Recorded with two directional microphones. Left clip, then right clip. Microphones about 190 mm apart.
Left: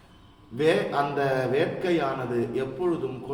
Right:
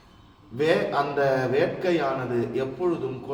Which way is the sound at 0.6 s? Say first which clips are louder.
Right 1 dB; 15° left (ahead or behind).